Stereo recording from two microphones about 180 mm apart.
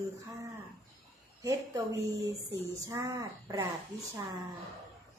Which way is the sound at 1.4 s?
20° right (ahead or behind).